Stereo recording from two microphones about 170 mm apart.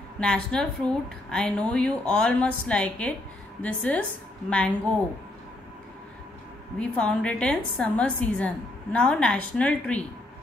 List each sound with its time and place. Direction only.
0.2 s a woman's voice: 5° left (ahead or behind)
6.8 s a woman's voice: 5° left (ahead or behind)